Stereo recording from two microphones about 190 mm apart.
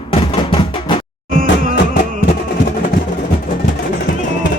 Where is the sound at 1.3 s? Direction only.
45° right (ahead or behind).